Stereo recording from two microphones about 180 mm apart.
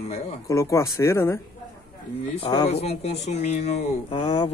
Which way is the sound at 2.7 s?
35° left (ahead or behind).